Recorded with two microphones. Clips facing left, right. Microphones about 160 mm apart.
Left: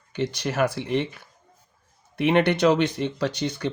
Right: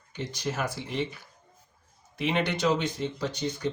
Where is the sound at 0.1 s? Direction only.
75° left (ahead or behind).